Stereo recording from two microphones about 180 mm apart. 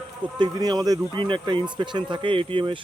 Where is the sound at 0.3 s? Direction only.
25° right (ahead or behind).